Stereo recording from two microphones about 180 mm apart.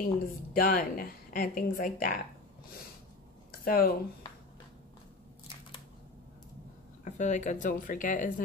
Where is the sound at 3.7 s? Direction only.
55° left (ahead or behind).